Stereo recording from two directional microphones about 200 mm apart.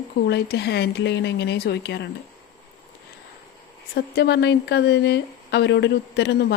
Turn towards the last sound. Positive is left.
turn(degrees=60)  # may be behind; listen again after turning